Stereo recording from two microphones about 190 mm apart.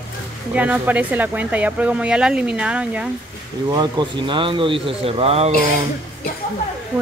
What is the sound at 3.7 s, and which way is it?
Speech, 20° right (ahead or behind).